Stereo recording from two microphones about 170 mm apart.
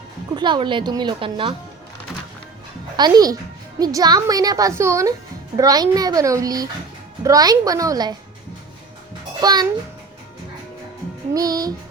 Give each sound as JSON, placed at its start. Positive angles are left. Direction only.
{"t": 0.3, "sound": "speech", "side_deg": -25}
{"t": 2.9, "sound": "speech", "side_deg": -25}
{"t": 9.4, "sound": "speech", "side_deg": -25}
{"t": 11.3, "sound": "speech", "side_deg": -20}